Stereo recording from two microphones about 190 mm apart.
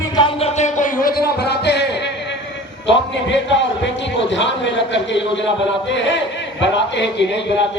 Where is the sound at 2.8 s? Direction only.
70° left (ahead or behind).